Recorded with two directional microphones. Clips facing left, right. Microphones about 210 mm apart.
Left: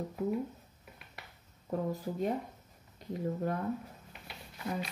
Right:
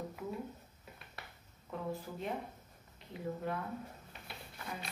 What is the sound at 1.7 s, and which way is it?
Speech, 40° left (ahead or behind).